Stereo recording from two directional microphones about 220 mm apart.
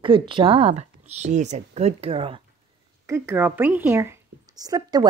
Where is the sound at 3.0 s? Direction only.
10° right (ahead or behind).